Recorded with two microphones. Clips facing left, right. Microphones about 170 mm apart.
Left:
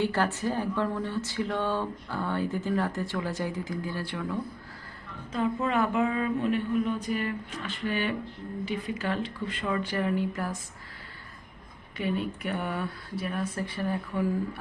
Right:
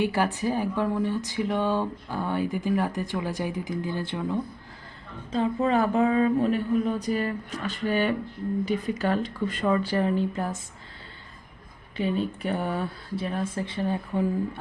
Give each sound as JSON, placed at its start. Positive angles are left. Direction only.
{"t": 0.0, "sound": "speech", "side_deg": -15}
{"t": 11.9, "sound": "speech", "side_deg": -30}